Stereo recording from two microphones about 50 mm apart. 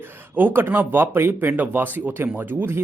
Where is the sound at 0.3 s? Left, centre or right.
Right.